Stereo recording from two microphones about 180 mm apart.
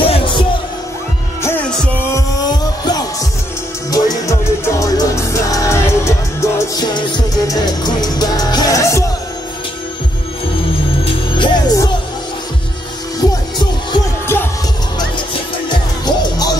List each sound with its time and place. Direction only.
0.0 s music: 30° left (ahead or behind)
1.4 s music: 10° left (ahead or behind)
11.1 s music: 25° left (ahead or behind)
13.2 s music: 25° left (ahead or behind)
14.2 s music: 10° left (ahead or behind)
15.7 s music: 25° left (ahead or behind)